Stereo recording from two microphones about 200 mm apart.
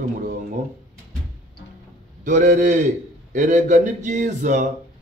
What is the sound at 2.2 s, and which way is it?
Speech, 40° right (ahead or behind).